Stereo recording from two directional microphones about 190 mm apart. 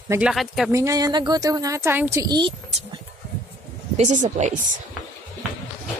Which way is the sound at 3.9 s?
40° right (ahead or behind).